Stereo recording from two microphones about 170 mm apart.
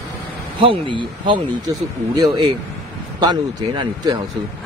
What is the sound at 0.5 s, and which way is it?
Speech, 30° right (ahead or behind).